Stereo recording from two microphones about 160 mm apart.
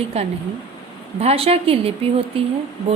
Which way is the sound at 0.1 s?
40° right (ahead or behind).